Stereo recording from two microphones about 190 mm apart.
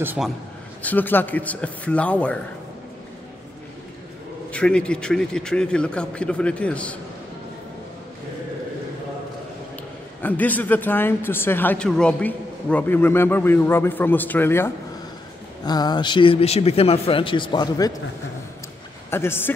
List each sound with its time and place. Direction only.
0.0 s a man's voice: 10° right (ahead or behind)
0.8 s speech: 10° left (ahead or behind)
4.5 s a man's voice: 5° left (ahead or behind)
10.2 s speech: 10° left (ahead or behind)
19.0 s speech: 15° left (ahead or behind)